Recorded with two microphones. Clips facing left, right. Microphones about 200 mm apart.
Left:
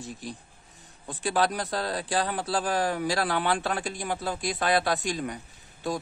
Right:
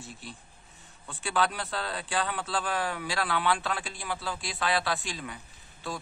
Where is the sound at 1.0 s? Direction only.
40° left (ahead or behind).